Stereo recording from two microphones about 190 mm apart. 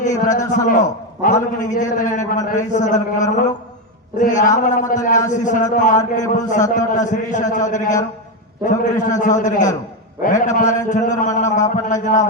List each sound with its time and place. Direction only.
0.0 s a man's voice: 40° left (ahead or behind)